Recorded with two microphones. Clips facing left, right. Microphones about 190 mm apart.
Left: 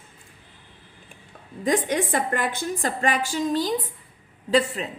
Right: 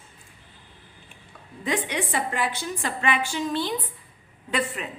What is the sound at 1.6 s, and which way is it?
A woman's voice, 45° left (ahead or behind).